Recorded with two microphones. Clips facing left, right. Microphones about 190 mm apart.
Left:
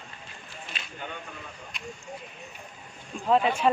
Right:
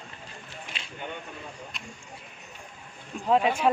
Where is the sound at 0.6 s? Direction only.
25° right (ahead or behind).